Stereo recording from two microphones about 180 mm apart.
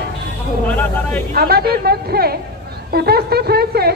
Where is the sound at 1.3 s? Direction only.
60° right (ahead or behind).